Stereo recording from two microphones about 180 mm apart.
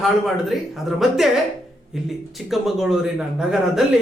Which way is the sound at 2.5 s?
Centre (ahead or behind).